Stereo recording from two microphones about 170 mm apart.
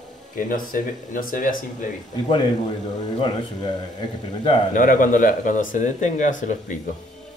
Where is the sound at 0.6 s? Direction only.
50° left (ahead or behind).